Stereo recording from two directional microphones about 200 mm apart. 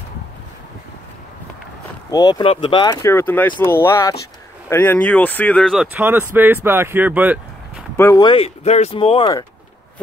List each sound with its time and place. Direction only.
2.0 s speech: 20° left (ahead or behind); by 5.9 s 5° left (ahead or behind)
5.9 s speech: 10° right (ahead or behind)
8.0 s speech: 20° left (ahead or behind)